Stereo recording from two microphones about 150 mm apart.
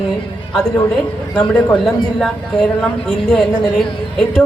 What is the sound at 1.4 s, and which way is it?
A man's voice, 5° left (ahead or behind).